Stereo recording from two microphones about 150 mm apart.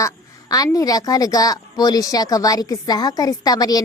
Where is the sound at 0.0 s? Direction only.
25° left (ahead or behind).